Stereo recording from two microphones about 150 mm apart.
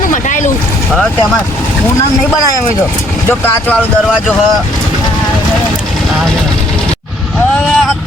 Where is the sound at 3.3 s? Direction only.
15° left (ahead or behind).